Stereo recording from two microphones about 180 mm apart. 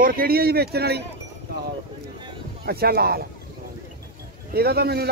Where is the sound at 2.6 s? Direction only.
60° right (ahead or behind).